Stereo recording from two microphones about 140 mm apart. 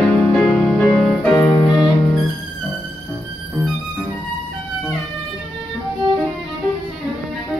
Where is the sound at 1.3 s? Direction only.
25° left (ahead or behind).